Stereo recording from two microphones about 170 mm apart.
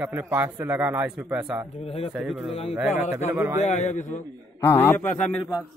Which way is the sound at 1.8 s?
35° left (ahead or behind).